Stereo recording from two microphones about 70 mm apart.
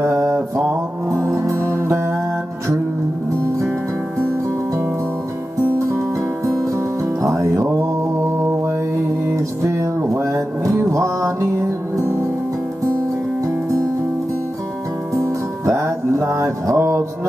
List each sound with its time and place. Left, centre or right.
0.0 s mantra: right
1.3 s music: right
7.2 s music: right
9.3 s music: right
15.1 s music: right